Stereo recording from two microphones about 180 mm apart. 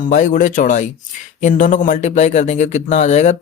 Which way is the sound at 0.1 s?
45° left (ahead or behind).